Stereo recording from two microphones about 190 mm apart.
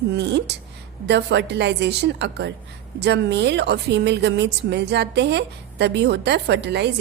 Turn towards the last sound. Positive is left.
turn(degrees=-65)  # may be behind; listen again after turning